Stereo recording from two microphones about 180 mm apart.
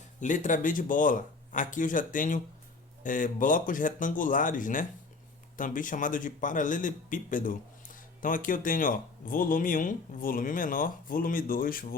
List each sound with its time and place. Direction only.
0.2 s speech: 45° left (ahead or behind)